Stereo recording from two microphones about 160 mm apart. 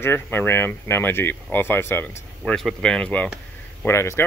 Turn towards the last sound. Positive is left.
turn(degrees=15)  # may be behind; listen again after turning